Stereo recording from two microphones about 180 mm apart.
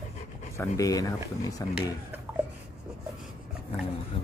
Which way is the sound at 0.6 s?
20° left (ahead or behind).